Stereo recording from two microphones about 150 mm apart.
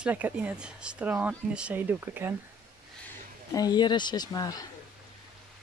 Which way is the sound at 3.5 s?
25° left (ahead or behind).